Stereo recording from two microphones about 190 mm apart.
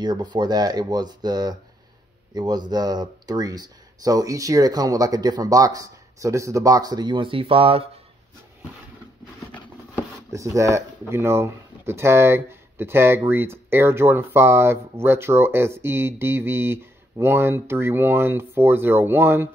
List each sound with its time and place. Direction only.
0.0 s speech: 25° right (ahead or behind)
10.3 s speech: 15° right (ahead or behind)